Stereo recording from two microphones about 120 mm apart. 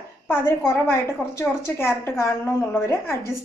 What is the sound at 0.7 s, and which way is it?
A woman's voice, 20° left (ahead or behind).